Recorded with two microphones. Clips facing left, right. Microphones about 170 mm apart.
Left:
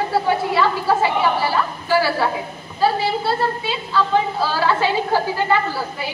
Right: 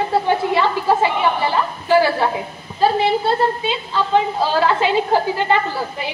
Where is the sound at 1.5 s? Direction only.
20° right (ahead or behind).